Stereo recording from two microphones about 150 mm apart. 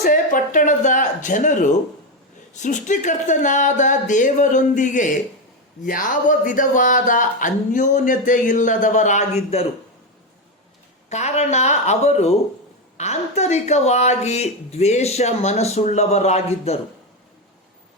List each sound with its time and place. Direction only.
0.0 s speech: 65° left (ahead or behind); by 9.6 s 45° left (ahead or behind)
11.1 s speech: 50° left (ahead or behind)